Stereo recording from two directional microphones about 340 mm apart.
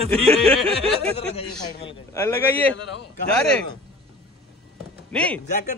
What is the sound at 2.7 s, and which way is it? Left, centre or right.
Speech, left.